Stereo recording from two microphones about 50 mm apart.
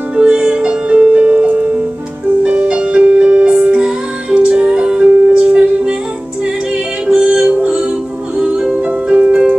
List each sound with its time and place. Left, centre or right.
0.1 s music: right
7.4 s music: right
8.8 s music: right
9.3 s keyboard: right